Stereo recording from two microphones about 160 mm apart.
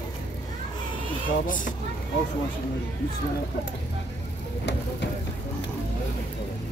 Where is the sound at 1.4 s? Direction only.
55° left (ahead or behind).